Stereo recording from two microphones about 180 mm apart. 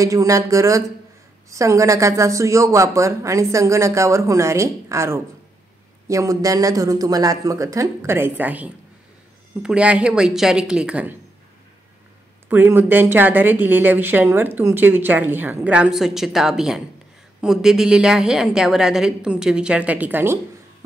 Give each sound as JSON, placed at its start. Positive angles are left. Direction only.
{"t": 0.0, "sound": "a woman's voice", "side_deg": -15}
{"t": 12.4, "sound": "a woman's voice", "side_deg": -10}